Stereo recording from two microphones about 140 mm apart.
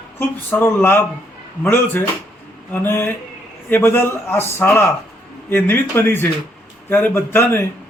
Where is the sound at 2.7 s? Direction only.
15° left (ahead or behind).